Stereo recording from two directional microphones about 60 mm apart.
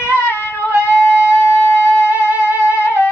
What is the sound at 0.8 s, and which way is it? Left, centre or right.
Music, left.